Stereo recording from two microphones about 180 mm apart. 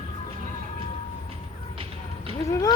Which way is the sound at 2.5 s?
15° left (ahead or behind).